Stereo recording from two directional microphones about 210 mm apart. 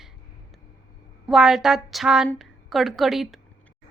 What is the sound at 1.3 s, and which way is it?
A woman's voice, centre (ahead or behind).